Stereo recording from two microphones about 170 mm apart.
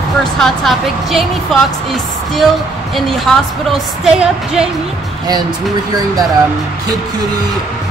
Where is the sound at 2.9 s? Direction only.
Centre (ahead or behind).